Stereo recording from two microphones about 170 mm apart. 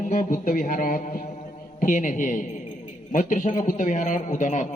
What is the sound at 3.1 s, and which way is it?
A man's voice, 50° left (ahead or behind).